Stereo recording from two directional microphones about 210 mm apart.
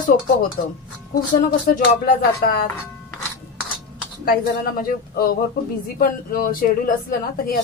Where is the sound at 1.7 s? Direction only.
45° left (ahead or behind).